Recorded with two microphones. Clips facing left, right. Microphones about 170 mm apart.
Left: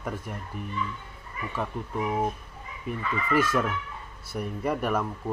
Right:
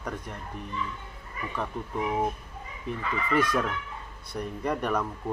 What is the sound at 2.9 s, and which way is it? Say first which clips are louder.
Speech: left 1 dB; 5° left (ahead or behind).